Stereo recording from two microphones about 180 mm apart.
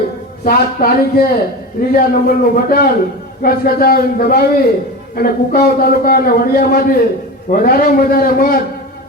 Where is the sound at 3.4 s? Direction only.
55° left (ahead or behind).